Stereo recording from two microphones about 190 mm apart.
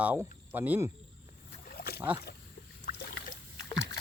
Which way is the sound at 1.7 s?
55° left (ahead or behind).